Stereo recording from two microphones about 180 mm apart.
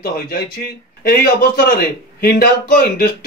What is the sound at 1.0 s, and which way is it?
A man's voice, 60° left (ahead or behind).